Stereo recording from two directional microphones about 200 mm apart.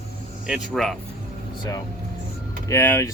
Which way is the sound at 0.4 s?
Centre (ahead or behind).